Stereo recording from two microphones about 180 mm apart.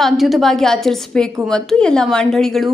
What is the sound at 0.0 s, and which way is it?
A woman's voice, centre (ahead or behind).